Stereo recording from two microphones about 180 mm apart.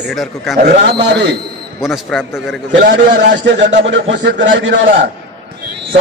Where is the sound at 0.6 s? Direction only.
65° right (ahead or behind).